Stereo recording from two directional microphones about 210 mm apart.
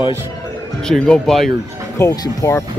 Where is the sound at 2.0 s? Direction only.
15° left (ahead or behind).